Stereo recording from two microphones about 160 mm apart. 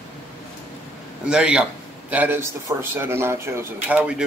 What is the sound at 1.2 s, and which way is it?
A man's voice, 5° right (ahead or behind).